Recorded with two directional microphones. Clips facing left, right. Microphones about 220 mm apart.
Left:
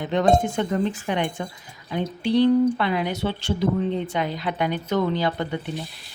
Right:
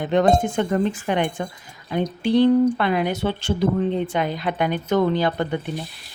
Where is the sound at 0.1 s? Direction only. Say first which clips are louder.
Right 2 dB; 50° right (ahead or behind).